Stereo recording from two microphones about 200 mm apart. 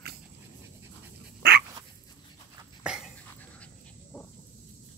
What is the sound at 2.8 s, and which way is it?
Dog, 5° right (ahead or behind).